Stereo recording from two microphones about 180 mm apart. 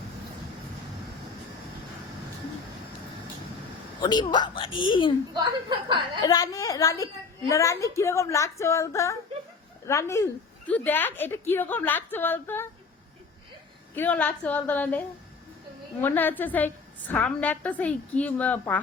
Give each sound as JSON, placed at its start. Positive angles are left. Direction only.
{"t": 4.0, "sound": "a woman's voice", "side_deg": 25}
{"t": 5.3, "sound": "speech", "side_deg": -25}
{"t": 6.2, "sound": "a woman's voice", "side_deg": 20}
{"t": 13.9, "sound": "a woman's voice", "side_deg": 10}